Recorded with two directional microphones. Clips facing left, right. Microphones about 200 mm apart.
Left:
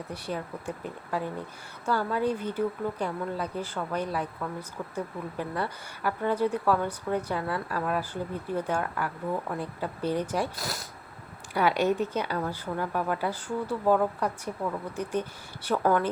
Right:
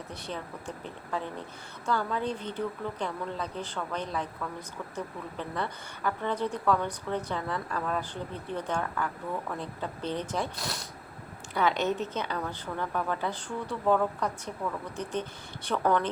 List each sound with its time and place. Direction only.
0.1 s a woman's voice: 10° left (ahead or behind)